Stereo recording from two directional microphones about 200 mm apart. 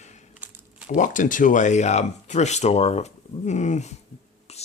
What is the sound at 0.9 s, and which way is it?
Speech, 40° left (ahead or behind).